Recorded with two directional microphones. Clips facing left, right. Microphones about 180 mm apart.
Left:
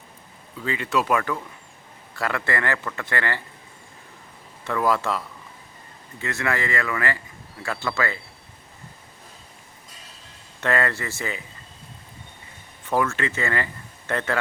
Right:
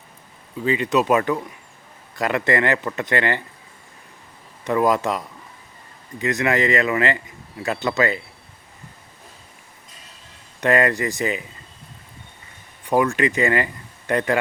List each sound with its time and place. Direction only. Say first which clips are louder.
0.6 s speech: right 5 dB; 20° right (ahead or behind)
4.6 s speech: right 4 dB; 20° right (ahead or behind)
10.6 s speech: right 5 dB; 15° right (ahead or behind)
12.8 s speech: right 5 dB; 15° right (ahead or behind)